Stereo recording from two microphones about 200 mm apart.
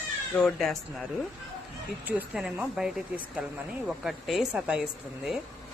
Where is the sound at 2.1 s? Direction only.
5° right (ahead or behind).